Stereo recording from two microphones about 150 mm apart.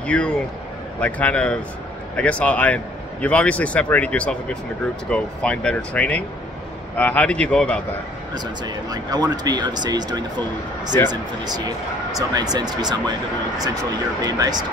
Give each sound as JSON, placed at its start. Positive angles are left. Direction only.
{"t": 0.0, "sound": "a man's voice", "side_deg": 5}
{"t": 8.6, "sound": "speech", "side_deg": -25}
{"t": 14.2, "sound": "speech", "side_deg": -25}